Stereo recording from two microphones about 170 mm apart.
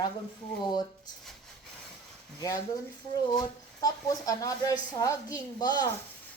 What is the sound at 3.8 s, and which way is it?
A woman's voice, 20° left (ahead or behind).